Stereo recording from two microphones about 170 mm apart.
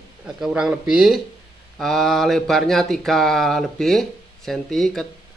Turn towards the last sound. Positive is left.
turn(degrees=0)  # may be behind; listen again after turning